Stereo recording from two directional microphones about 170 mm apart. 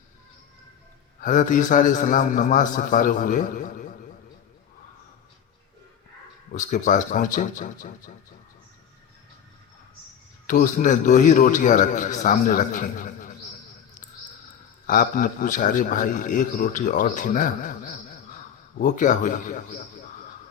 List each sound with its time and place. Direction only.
1.2 s a man's voice: 50° left (ahead or behind)
6.5 s a man's voice: 45° left (ahead or behind)
10.4 s a man's voice: 50° left (ahead or behind)
14.8 s a man's voice: 55° left (ahead or behind)